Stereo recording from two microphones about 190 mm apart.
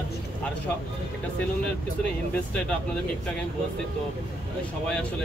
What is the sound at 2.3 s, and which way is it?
Speech, 5° left (ahead or behind).